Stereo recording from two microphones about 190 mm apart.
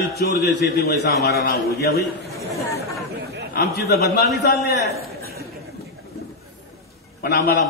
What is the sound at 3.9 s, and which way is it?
Speech, 55° left (ahead or behind).